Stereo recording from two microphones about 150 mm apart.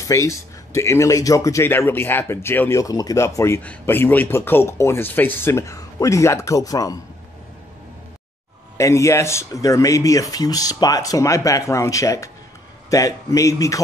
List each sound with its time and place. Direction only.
0.0 s speech: 20° left (ahead or behind)
8.7 s speech: 20° left (ahead or behind)